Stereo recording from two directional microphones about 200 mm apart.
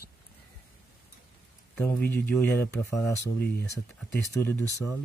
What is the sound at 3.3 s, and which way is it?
Speech, 50° left (ahead or behind).